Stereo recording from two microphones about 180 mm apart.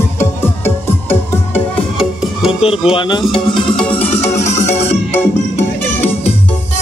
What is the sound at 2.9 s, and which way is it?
Speech, 25° left (ahead or behind).